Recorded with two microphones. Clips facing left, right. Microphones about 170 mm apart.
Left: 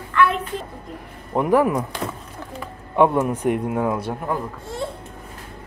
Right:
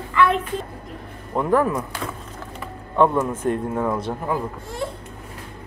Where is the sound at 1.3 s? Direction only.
15° left (ahead or behind).